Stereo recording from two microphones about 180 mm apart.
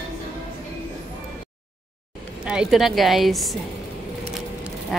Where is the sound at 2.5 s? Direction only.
5° right (ahead or behind).